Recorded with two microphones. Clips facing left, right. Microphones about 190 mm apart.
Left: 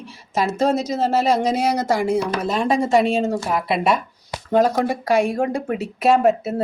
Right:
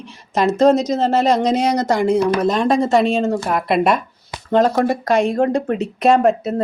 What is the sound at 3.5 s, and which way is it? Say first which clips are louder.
Speech: right 3 dB; 55° right (ahead or behind).